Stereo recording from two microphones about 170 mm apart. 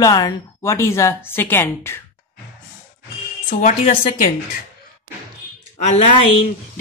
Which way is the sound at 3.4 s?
50° left (ahead or behind).